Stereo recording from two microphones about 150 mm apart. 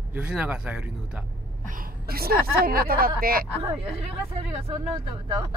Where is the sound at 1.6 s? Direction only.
65° right (ahead or behind).